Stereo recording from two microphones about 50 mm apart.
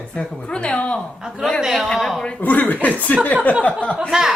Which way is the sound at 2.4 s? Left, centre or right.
Left.